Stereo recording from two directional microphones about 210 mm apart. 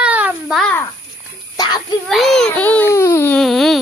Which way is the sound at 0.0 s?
5° right (ahead or behind).